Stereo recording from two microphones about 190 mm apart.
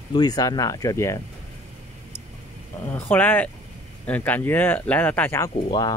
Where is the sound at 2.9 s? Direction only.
10° left (ahead or behind).